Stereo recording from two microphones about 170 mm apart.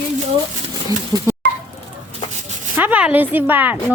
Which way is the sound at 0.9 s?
20° right (ahead or behind).